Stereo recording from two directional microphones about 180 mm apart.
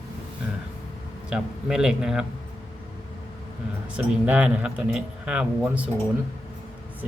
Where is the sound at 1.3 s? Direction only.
5° right (ahead or behind).